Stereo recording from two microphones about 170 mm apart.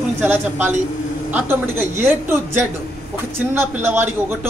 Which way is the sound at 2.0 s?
15° right (ahead or behind).